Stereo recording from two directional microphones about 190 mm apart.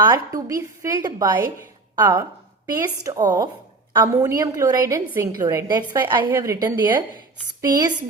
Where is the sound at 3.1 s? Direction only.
20° right (ahead or behind).